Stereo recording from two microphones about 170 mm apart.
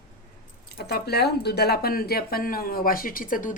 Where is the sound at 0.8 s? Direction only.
65° left (ahead or behind).